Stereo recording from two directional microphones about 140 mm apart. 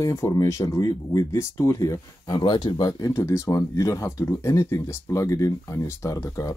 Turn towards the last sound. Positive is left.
turn(degrees=25)  # may be behind; listen again after turning